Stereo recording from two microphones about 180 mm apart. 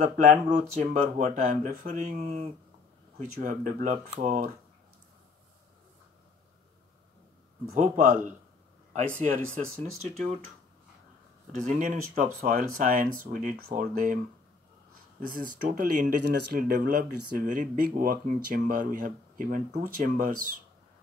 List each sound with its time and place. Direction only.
0.0 s speech: 50° right (ahead or behind)
7.7 s speech: 40° right (ahead or behind)
10.0 s speech: 35° right (ahead or behind)
11.5 s speech: 45° right (ahead or behind)
15.2 s speech: 50° right (ahead or behind)